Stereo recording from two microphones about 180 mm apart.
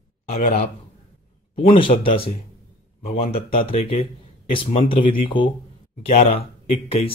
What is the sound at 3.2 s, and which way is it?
Speech, 30° left (ahead or behind).